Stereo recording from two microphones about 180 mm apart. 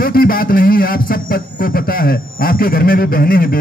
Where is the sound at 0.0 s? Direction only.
55° left (ahead or behind).